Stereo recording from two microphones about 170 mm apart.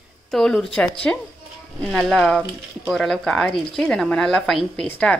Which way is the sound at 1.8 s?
Centre (ahead or behind).